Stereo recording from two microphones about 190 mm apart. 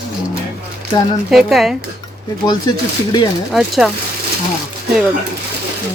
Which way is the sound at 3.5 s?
Centre (ahead or behind).